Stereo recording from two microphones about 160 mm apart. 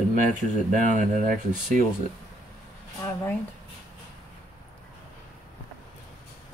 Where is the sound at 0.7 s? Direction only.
55° right (ahead or behind).